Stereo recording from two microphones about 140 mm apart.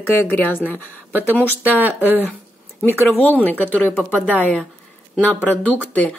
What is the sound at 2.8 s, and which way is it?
A woman's voice, 15° left (ahead or behind).